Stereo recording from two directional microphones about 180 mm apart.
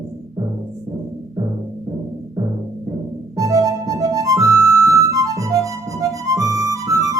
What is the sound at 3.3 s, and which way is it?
Music, 20° right (ahead or behind).